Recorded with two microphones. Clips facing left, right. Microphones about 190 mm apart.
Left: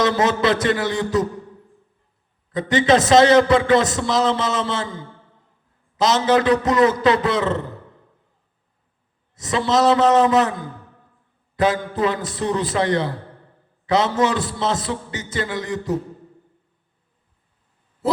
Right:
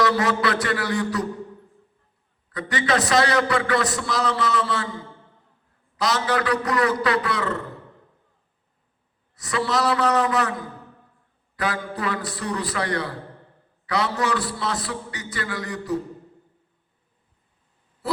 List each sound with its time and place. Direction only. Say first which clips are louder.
0.0 s a man's voice: left 3 dB; 20° left (ahead or behind)
2.5 s a man's voice: left 7 dB; 20° left (ahead or behind)
6.0 s a man's voice: left 6 dB; 20° left (ahead or behind)
9.3 s a man's voice: left 5 dB; 20° left (ahead or behind)
11.5 s a man's voice: left 7 dB; 20° left (ahead or behind)
18.0 s owl: left 5 dB; 20° left (ahead or behind)